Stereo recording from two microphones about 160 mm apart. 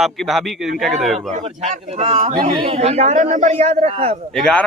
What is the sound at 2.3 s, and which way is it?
Speech, 30° right (ahead or behind).